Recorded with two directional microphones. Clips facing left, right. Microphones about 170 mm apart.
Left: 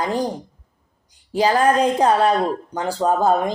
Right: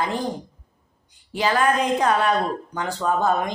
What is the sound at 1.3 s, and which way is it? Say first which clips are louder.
Speech: left 4 dB; 35° left (ahead or behind).